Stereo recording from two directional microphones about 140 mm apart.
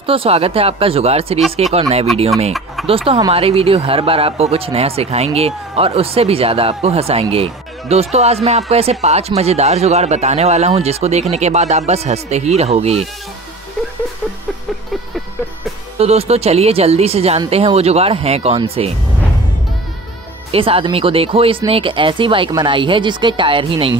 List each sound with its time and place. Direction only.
0.0 s speech: 40° right (ahead or behind)
2.5 s a sound: centre (ahead or behind)
2.9 s speech: 40° right (ahead or behind)
16.0 s speech: 50° right (ahead or behind)
20.5 s speech: 40° right (ahead or behind)